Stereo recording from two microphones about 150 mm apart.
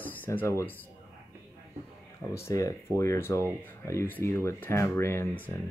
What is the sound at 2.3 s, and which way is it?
Speech, 20° left (ahead or behind).